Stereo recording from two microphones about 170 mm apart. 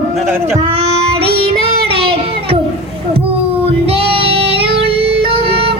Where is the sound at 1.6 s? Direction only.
35° right (ahead or behind).